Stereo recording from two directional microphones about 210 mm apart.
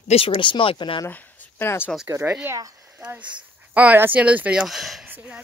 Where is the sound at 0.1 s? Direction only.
25° left (ahead or behind).